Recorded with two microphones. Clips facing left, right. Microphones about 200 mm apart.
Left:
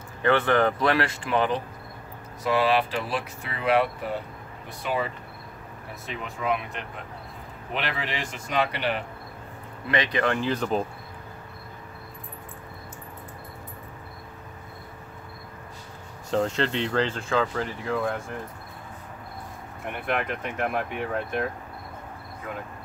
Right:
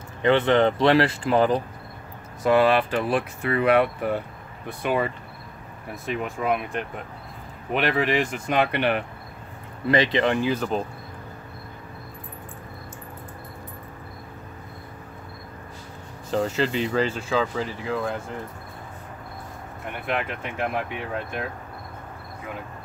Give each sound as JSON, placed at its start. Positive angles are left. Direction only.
{"t": 0.2, "sound": "speech", "side_deg": -20}
{"t": 2.4, "sound": "speech", "side_deg": -50}
{"t": 10.1, "sound": "speech", "side_deg": -15}
{"t": 16.3, "sound": "speech", "side_deg": -5}
{"t": 20.1, "sound": "speech", "side_deg": 0}